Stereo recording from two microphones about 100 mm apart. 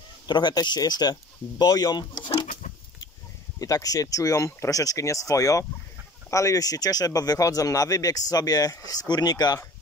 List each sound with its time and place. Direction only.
0.3 s speech: 45° left (ahead or behind)
3.5 s speech: 35° left (ahead or behind)